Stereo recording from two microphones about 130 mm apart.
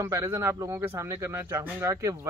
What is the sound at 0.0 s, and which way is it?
Speech, 25° right (ahead or behind).